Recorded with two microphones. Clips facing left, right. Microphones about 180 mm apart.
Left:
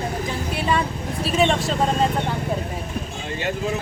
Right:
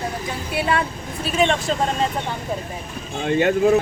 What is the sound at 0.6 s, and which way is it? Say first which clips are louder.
Speech: right 2 dB; 5° right (ahead or behind).